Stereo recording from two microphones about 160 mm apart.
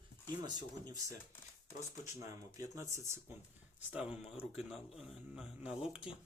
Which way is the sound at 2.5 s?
20° right (ahead or behind).